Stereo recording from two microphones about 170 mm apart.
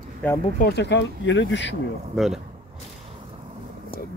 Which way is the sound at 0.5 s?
70° left (ahead or behind).